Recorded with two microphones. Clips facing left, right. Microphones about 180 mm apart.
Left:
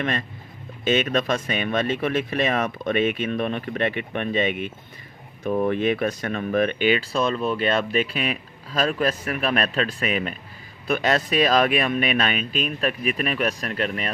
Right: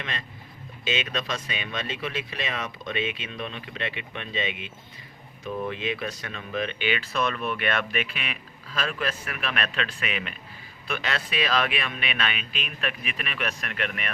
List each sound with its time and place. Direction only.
0.0 s speech: 50° left (ahead or behind); by 14.1 s 35° left (ahead or behind)